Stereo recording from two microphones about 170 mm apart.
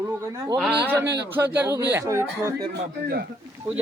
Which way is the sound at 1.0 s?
85° right.